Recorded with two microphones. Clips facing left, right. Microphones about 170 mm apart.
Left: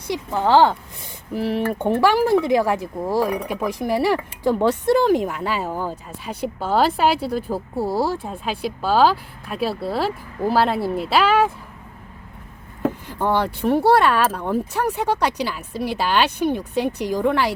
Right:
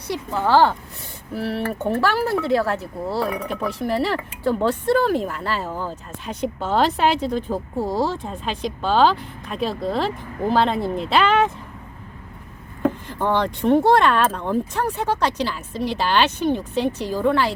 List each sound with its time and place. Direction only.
0.1 s speech: 15° left (ahead or behind)
13.1 s speech: 10° left (ahead or behind)